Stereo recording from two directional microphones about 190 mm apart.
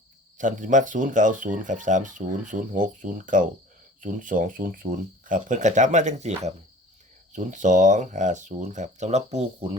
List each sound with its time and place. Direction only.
0.3 s speech: 40° right (ahead or behind)